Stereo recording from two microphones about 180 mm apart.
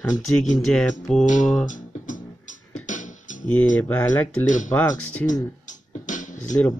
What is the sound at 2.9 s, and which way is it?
Beatboxing, 45° left (ahead or behind).